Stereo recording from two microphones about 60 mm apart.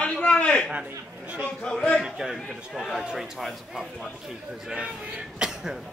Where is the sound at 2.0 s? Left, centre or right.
Centre.